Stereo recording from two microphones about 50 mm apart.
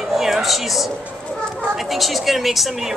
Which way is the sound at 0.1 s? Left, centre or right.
Centre.